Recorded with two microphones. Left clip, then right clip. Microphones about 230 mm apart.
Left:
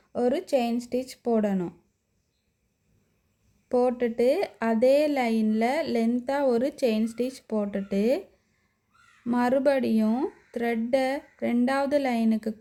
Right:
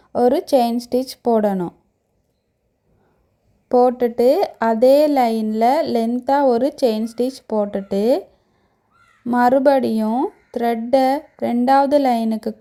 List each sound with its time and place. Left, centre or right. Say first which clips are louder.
0.1 s a woman's voice: right 9 dB; centre
3.7 s a woman's voice: right 9 dB; centre
9.2 s a woman's voice: right 9 dB; centre